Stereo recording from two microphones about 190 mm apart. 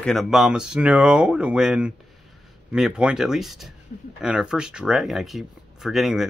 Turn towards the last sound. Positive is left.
turn(degrees=0)  # may be behind; listen again after turning